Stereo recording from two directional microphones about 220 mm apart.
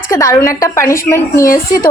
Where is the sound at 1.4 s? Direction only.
40° left (ahead or behind).